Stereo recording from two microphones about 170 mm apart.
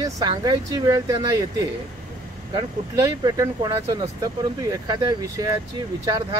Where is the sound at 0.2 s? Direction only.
25° right (ahead or behind).